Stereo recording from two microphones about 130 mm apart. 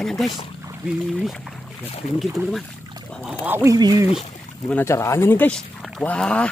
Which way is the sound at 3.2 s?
15° right (ahead or behind).